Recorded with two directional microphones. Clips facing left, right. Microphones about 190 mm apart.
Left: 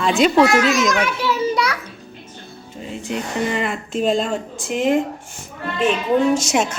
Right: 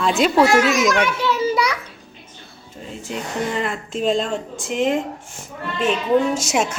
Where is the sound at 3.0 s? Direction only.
Centre (ahead or behind).